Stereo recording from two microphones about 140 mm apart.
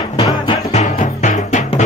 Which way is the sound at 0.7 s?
60° left (ahead or behind).